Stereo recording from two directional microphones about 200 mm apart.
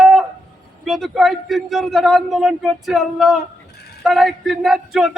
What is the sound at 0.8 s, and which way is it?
A man's voice, centre (ahead or behind).